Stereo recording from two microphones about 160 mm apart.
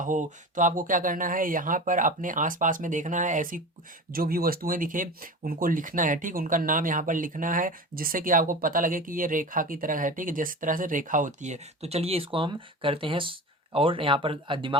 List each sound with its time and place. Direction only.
0.0 s speech: 55° right (ahead or behind)
4.1 s speech: 70° right (ahead or behind); by 14.8 s 30° right (ahead or behind)